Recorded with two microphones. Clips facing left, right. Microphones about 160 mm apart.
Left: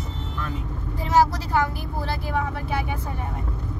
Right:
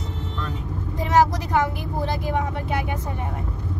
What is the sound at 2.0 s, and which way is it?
Speech, 20° right (ahead or behind).